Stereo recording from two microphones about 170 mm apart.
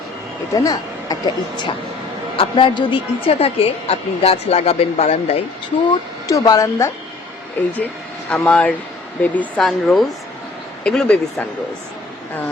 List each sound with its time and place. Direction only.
0.5 s a woman's voice: 20° left (ahead or behind); by 5.4 s 35° left (ahead or behind)
5.9 s speech: 20° left (ahead or behind)
8.3 s speech: 5° left (ahead or behind)